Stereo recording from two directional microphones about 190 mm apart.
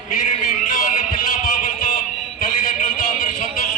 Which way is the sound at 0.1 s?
45° left (ahead or behind).